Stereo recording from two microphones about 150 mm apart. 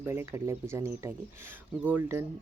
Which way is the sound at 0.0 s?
15° right (ahead or behind).